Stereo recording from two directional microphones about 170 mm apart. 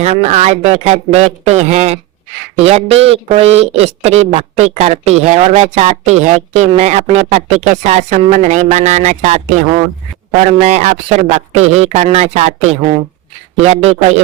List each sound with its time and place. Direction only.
0.0 s a man's voice: 40° right (ahead or behind)